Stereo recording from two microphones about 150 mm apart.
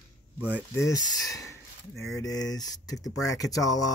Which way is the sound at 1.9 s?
Centre (ahead or behind).